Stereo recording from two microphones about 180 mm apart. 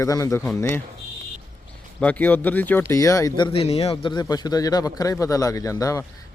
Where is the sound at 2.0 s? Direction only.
10° left (ahead or behind).